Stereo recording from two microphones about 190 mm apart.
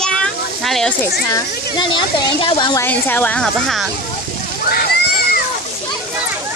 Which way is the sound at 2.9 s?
10° left (ahead or behind).